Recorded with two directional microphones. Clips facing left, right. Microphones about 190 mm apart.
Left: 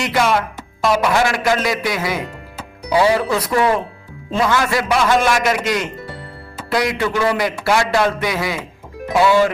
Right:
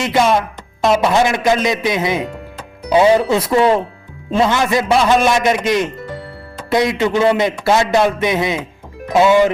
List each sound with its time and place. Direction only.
0.0 s a man's voice: 20° right (ahead or behind)